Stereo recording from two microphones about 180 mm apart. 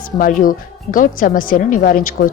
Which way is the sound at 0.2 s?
50° left (ahead or behind).